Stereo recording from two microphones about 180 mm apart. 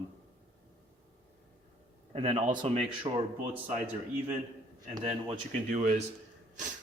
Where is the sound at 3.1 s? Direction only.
25° right (ahead or behind).